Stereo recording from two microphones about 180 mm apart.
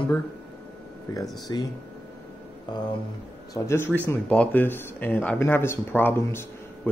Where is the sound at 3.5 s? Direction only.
15° left (ahead or behind).